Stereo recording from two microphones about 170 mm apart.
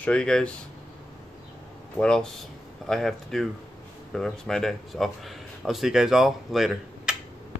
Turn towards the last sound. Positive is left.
turn(degrees=0)  # may be behind; listen again after turning